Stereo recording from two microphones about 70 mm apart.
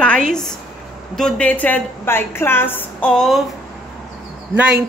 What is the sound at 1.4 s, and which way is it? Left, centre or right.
A woman's voice, left.